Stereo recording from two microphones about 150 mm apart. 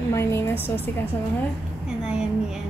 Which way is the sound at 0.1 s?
20° left (ahead or behind).